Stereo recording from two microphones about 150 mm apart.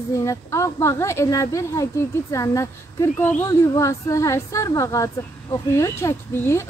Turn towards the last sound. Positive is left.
turn(degrees=15)  # may be behind; listen again after turning